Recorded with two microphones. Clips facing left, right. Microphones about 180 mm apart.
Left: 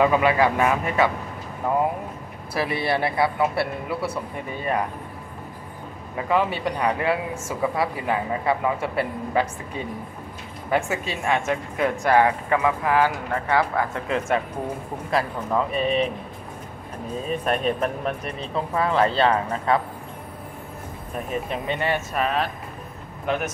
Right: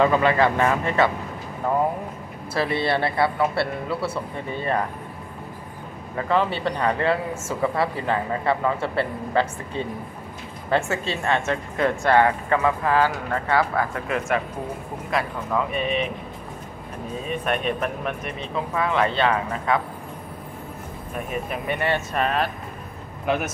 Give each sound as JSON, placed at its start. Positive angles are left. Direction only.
{"t": 0.0, "sound": "speech", "side_deg": 10}
{"t": 2.5, "sound": "speech", "side_deg": 15}
{"t": 6.1, "sound": "speech", "side_deg": 10}
{"t": 14.0, "sound": "speech", "side_deg": 30}
{"t": 17.3, "sound": "speech", "side_deg": 35}
{"t": 21.3, "sound": "speech", "side_deg": 25}
{"t": 22.1, "sound": "speech", "side_deg": 0}